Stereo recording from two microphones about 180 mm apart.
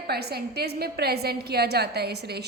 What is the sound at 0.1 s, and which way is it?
A woman's voice, 65° right (ahead or behind).